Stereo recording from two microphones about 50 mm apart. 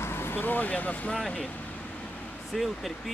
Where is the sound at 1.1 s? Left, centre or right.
Centre.